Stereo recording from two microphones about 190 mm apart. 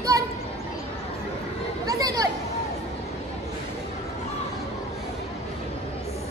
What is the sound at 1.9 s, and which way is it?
Chatter, 20° right (ahead or behind).